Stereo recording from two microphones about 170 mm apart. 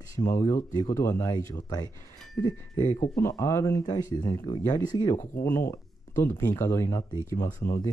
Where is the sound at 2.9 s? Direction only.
20° left (ahead or behind).